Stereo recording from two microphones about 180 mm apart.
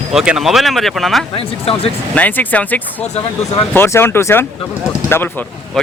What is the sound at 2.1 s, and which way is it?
Speech, 10° left (ahead or behind).